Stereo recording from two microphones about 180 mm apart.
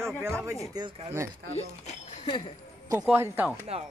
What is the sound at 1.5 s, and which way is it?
Speech, 35° left (ahead or behind).